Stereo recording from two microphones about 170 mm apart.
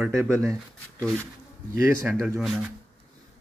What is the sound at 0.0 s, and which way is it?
Speech, 15° right (ahead or behind).